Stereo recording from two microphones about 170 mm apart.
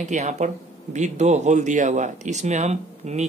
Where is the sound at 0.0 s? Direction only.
45° right (ahead or behind).